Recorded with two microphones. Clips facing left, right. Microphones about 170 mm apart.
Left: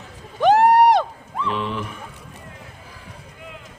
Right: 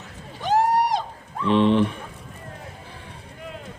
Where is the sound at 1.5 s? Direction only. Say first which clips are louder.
Right 10 dB; 30° right (ahead or behind).